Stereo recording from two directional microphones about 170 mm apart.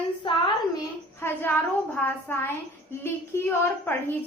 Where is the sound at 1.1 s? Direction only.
15° left (ahead or behind).